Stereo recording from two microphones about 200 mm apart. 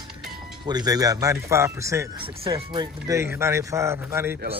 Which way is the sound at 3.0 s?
15° right (ahead or behind).